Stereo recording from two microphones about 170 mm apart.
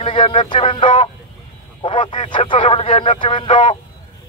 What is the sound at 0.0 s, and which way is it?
Speech, 30° left (ahead or behind).